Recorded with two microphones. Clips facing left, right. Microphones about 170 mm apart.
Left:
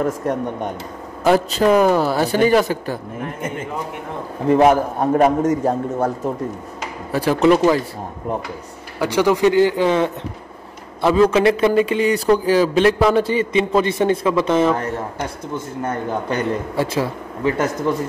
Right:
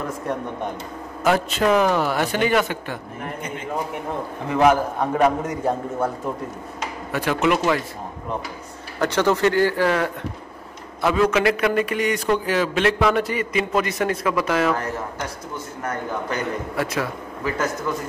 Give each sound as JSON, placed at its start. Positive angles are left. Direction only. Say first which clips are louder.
{"t": 1.2, "sound": "speech", "louder": "left 4 dB", "side_deg": 35}
{"t": 4.5, "sound": "speech", "louder": "left 4 dB", "side_deg": 35}
{"t": 7.1, "sound": "speech", "louder": "left 6 dB", "side_deg": 35}
{"t": 9.0, "sound": "a man's voice", "louder": "left 3 dB", "side_deg": 10}